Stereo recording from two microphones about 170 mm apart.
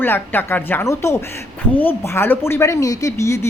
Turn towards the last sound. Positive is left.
turn(degrees=15)  # may be behind; listen again after turning